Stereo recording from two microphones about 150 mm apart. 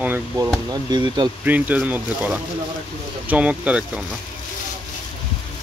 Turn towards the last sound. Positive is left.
turn(degrees=-10)  # may be behind; listen again after turning